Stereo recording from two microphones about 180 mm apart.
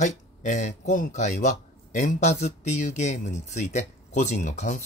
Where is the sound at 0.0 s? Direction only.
40° left (ahead or behind).